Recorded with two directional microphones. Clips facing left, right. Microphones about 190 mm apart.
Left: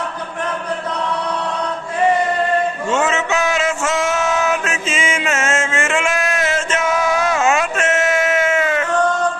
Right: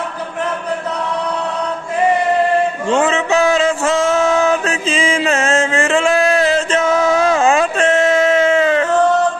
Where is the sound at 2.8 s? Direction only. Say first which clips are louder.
Right 3 dB; 35° right (ahead or behind).